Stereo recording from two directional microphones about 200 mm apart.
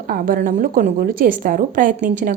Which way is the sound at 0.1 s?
45° right (ahead or behind).